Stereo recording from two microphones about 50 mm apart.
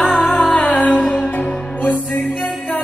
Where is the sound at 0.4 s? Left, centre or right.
Left.